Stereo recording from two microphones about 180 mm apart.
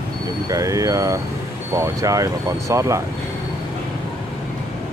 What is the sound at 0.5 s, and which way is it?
Speech, 20° right (ahead or behind).